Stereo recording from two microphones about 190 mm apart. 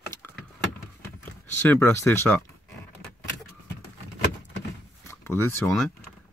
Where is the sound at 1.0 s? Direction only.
10° left (ahead or behind).